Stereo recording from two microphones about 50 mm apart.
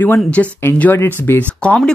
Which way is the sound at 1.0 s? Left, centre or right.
Left.